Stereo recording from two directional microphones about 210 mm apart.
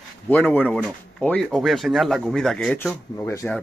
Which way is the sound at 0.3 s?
10° left (ahead or behind).